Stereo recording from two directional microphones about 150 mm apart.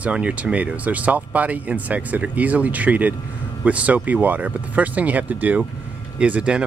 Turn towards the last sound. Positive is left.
turn(degrees=-5)  # may be behind; listen again after turning